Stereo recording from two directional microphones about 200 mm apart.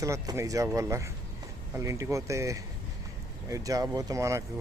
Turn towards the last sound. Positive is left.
turn(degrees=-15)  # may be behind; listen again after turning